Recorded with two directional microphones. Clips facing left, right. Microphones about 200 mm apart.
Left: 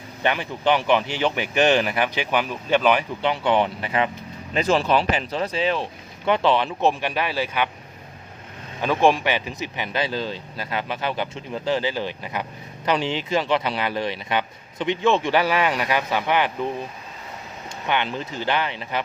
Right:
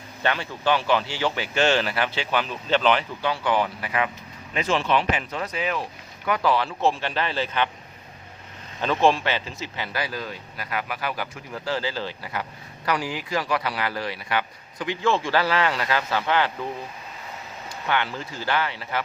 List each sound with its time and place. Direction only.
0.2 s speech: 15° left (ahead or behind)
8.8 s speech: 15° left (ahead or behind)
17.8 s speech: 20° left (ahead or behind)